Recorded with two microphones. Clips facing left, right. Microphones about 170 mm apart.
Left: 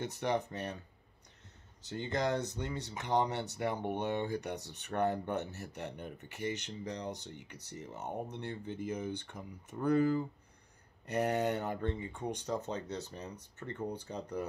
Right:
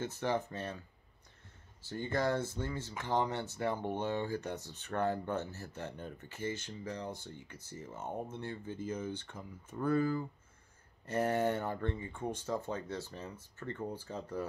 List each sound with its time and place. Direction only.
0.0 s speech: 20° left (ahead or behind)
1.8 s speech: 20° left (ahead or behind)